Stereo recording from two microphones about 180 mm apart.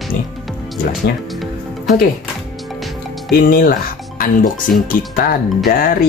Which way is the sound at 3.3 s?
55° left (ahead or behind).